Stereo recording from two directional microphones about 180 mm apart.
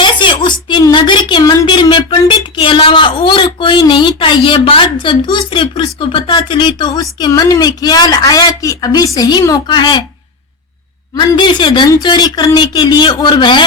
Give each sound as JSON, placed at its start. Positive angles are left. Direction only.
{"t": 0.0, "sound": "a woman's voice", "side_deg": 25}
{"t": 11.3, "sound": "speech", "side_deg": 25}